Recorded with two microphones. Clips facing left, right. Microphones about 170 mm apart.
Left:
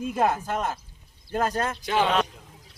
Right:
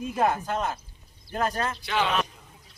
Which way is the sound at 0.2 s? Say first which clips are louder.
Even; 40° left (ahead or behind).